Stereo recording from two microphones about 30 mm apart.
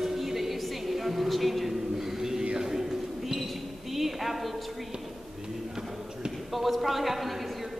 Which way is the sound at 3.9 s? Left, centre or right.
Centre.